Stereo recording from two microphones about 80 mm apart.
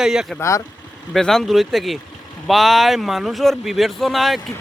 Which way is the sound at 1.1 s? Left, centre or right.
Centre.